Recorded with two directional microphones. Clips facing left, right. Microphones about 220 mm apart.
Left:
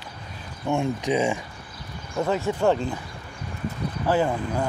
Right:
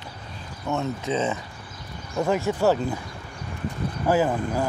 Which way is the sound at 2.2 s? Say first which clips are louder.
Right 1 dB; 10° right (ahead or behind).